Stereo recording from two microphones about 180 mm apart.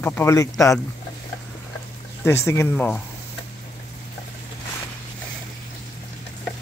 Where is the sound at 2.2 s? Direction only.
15° left (ahead or behind).